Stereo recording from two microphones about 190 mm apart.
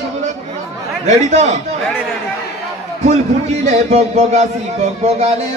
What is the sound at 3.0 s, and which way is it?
A man's voice, 35° right (ahead or behind).